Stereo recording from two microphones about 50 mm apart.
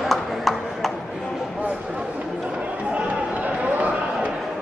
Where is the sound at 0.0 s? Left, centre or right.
Centre.